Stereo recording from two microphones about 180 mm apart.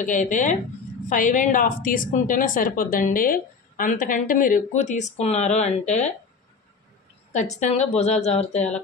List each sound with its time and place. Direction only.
0.0 s a woman's voice: 45° left (ahead or behind)
7.5 s speech: 40° left (ahead or behind)